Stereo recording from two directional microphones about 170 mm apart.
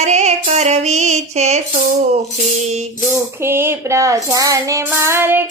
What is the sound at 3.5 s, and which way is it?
Female singing, 15° right (ahead or behind).